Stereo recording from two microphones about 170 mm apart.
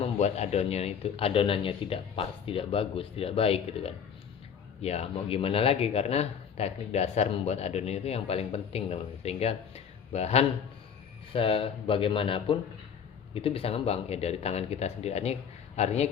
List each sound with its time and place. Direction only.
0.0 s speech: 40° left (ahead or behind)